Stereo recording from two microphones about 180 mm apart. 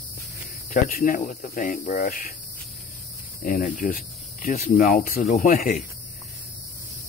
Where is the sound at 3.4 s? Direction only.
50° left (ahead or behind).